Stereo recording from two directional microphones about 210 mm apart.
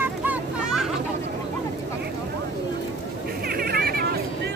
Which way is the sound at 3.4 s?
45° right (ahead or behind).